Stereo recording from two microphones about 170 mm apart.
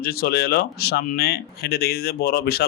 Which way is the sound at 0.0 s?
65° left (ahead or behind).